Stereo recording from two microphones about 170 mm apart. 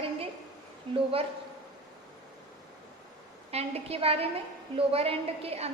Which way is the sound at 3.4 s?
35° right (ahead or behind).